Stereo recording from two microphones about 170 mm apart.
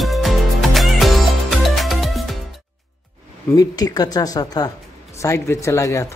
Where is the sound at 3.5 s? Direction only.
25° left (ahead or behind).